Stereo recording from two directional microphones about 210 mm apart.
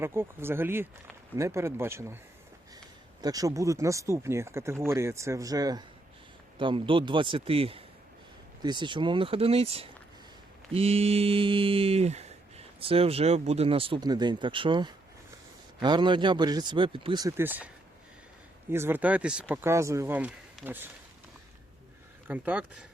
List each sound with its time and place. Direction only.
0.0 s speech: 10° right (ahead or behind)
3.2 s speech: 15° right (ahead or behind)
6.6 s mantra: 25° right (ahead or behind)
18.7 s speech: 10° right (ahead or behind)
22.3 s speech: 5° right (ahead or behind)